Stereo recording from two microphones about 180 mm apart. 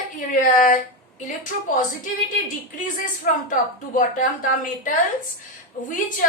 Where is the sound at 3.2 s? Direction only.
45° left (ahead or behind).